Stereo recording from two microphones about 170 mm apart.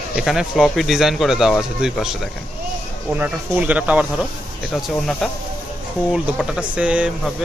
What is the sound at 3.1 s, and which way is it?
Speech, 10° right (ahead or behind).